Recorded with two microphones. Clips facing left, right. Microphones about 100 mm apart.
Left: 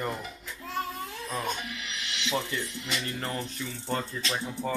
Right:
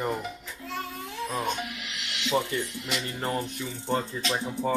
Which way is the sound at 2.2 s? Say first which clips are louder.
Right 4 dB; 15° right (ahead or behind).